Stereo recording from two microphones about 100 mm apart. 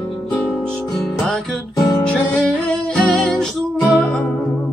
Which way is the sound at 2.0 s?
5° left (ahead or behind).